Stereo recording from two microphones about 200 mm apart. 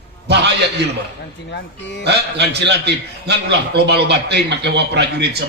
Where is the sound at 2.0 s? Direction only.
55° right (ahead or behind).